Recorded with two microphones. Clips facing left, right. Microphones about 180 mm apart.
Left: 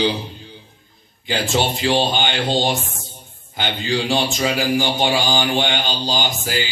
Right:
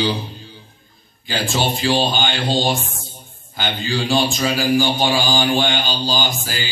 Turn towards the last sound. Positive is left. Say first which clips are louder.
# left 1 dB
turn(degrees=20)  # may be behind; listen again after turning